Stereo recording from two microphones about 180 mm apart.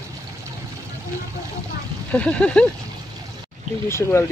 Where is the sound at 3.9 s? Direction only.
15° left (ahead or behind).